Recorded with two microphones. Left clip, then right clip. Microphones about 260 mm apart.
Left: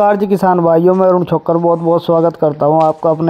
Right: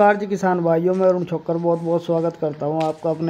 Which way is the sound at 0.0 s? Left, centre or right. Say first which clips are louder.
Left 5 dB; left.